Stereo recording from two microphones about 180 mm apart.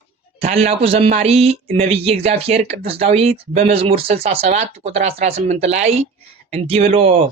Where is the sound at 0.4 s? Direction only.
35° right (ahead or behind).